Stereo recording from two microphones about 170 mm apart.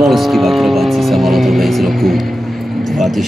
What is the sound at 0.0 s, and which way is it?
Speech, centre (ahead or behind).